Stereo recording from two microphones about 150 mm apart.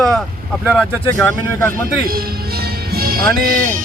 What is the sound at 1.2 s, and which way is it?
Speech, 15° left (ahead or behind).